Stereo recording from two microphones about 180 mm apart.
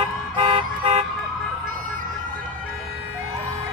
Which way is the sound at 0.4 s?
25° right (ahead or behind).